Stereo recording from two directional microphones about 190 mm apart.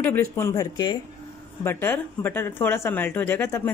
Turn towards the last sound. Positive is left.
turn(degrees=10)  # may be behind; listen again after turning